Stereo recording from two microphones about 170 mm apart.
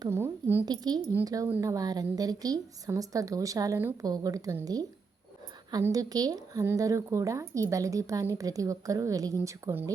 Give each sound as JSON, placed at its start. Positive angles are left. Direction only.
{"t": 0.0, "sound": "a woman's voice", "side_deg": -15}
{"t": 0.7, "sound": "speech", "side_deg": -25}